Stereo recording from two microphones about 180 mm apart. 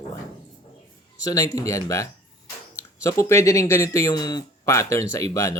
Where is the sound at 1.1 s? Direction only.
20° left (ahead or behind).